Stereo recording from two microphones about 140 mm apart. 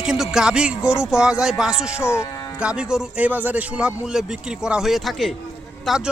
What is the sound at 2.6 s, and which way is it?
A man's voice, 5° right (ahead or behind).